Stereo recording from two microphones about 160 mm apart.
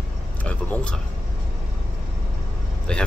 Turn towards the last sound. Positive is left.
turn(degrees=5)  # may be behind; listen again after turning